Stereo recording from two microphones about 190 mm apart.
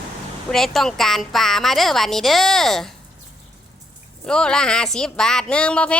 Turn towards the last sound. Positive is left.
turn(degrees=5)  # may be behind; listen again after turning